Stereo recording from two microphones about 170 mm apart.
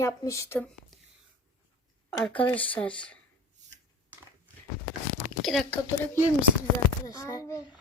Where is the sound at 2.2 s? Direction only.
10° left (ahead or behind).